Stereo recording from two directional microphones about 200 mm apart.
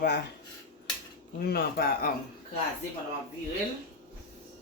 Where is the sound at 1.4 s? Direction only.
50° left (ahead or behind).